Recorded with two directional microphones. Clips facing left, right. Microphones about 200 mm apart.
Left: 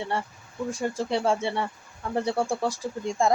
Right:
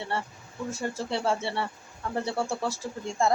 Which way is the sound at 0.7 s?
15° left (ahead or behind).